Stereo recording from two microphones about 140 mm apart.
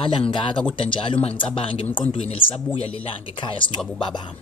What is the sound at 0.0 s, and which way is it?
Speech, 40° left (ahead or behind).